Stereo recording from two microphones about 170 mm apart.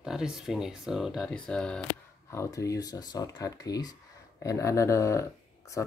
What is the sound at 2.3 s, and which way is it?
Speech, 15° left (ahead or behind).